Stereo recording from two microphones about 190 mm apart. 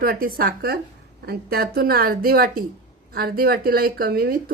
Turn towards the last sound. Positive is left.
turn(degrees=-55)  # may be behind; listen again after turning